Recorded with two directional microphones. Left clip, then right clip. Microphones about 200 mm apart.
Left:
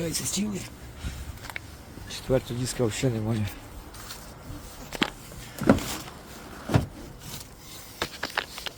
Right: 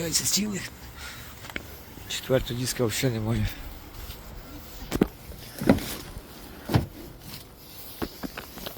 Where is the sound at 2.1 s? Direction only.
Centre (ahead or behind).